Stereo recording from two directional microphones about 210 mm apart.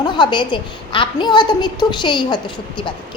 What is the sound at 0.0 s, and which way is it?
A woman's voice, 20° left (ahead or behind).